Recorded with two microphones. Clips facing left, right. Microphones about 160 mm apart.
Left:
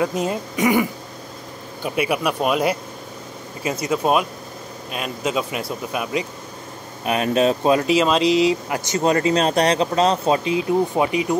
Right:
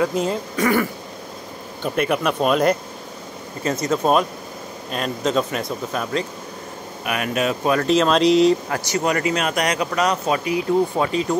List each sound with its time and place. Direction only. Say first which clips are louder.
0.0 s speech: right 1 dB; 20° left (ahead or behind)
7.1 s speech: left 4 dB; 30° left (ahead or behind)
7.8 s speech: right 1 dB; 5° left (ahead or behind)
8.6 s speech: left 2 dB; 20° left (ahead or behind)